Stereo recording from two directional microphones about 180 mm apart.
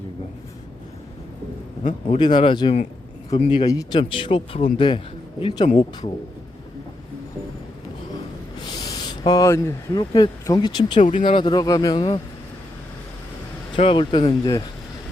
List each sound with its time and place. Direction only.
1.8 s a man's voice: 40° left (ahead or behind)
2.1 s speech: 25° left (ahead or behind)
8.5 s speech: 25° left (ahead or behind)
13.7 s speech: 30° left (ahead or behind)